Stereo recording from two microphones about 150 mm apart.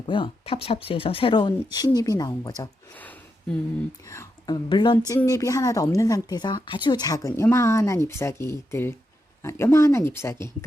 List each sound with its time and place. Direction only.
0.0 s speech: 35° left (ahead or behind)
2.9 s speech: 10° left (ahead or behind)
4.1 s a woman's voice: 20° left (ahead or behind)